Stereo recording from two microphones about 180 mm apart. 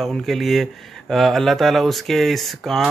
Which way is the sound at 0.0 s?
Centre (ahead or behind).